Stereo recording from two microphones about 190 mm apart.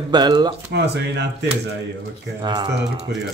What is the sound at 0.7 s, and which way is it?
Speech, 60° right (ahead or behind).